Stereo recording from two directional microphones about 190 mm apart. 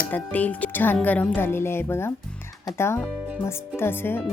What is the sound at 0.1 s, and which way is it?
Speech, 10° left (ahead or behind).